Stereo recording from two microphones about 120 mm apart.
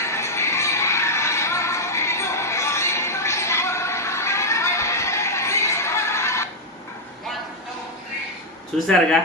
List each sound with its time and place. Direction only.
0.0 s music: 25° left (ahead or behind)
8.7 s speech: 5° left (ahead or behind)